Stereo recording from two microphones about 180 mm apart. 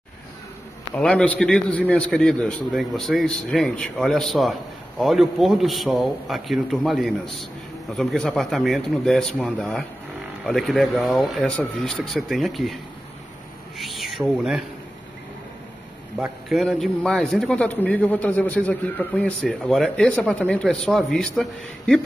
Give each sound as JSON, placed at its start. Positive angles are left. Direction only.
{"t": 0.9, "sound": "a man's voice", "side_deg": 5}
{"t": 13.7, "sound": "speech", "side_deg": 0}
{"t": 16.2, "sound": "a man's voice", "side_deg": 0}